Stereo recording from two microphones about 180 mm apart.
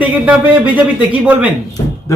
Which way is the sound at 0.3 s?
10° right (ahead or behind).